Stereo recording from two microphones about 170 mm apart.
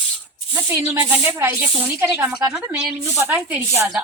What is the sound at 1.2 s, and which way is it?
Speech, 10° right (ahead or behind).